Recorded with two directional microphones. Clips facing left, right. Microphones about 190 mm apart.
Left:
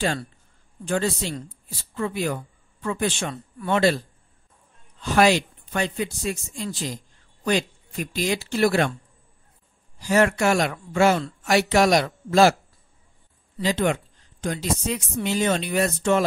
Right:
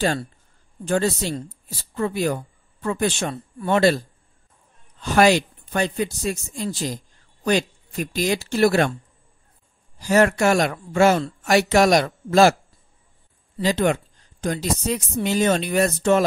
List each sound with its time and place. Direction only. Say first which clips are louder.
0.8 s speech: right 3 dB; 40° right (ahead or behind)
5.0 s speech: right 2 dB; 45° right (ahead or behind)
9.9 s speech: right 2 dB; 40° right (ahead or behind)
13.6 s speech: right 2 dB; 45° right (ahead or behind)